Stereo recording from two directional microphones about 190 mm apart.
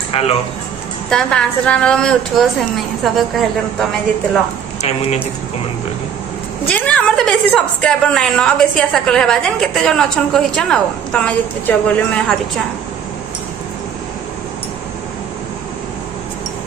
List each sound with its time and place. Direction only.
0.1 s speech: 30° left (ahead or behind)
1.1 s a woman's voice: 5° left (ahead or behind)
6.7 s a woman's voice: 5° left (ahead or behind)